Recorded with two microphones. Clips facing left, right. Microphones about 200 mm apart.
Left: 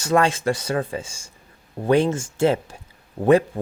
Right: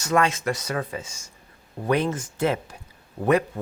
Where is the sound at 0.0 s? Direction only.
30° left (ahead or behind).